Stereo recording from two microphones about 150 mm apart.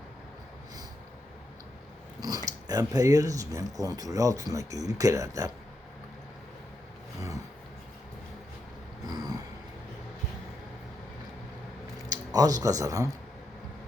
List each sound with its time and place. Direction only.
2.2 s speech: 25° right (ahead or behind)
9.0 s throat clearing: 25° right (ahead or behind)
12.0 s speech: 25° right (ahead or behind)